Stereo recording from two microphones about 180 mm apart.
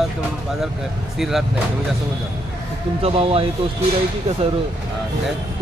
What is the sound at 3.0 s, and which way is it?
Speech, 35° right (ahead or behind).